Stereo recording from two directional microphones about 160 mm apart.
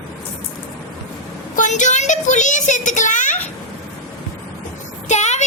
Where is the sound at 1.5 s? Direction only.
50° left (ahead or behind).